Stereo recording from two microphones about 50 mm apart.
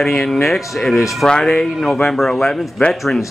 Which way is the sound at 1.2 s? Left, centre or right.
Centre.